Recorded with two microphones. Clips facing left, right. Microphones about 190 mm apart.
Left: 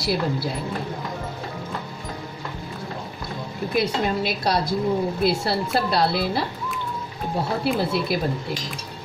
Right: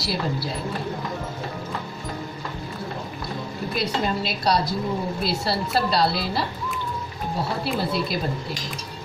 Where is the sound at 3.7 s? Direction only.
55° left (ahead or behind).